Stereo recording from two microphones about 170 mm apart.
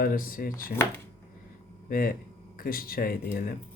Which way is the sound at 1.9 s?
55° left (ahead or behind).